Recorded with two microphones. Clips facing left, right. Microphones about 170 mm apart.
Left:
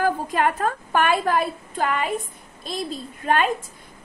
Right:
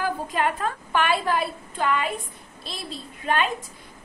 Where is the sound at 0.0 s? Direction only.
50° left (ahead or behind).